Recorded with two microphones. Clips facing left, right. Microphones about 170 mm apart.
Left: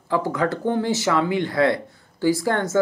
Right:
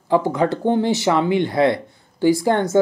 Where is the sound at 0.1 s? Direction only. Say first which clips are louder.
Right 4 dB; 20° right (ahead or behind).